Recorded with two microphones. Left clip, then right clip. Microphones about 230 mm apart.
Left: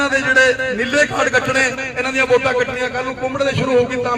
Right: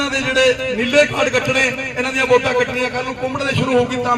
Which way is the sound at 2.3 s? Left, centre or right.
Right.